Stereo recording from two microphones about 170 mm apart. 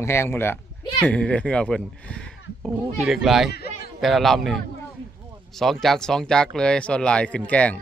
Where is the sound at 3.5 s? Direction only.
70° left (ahead or behind).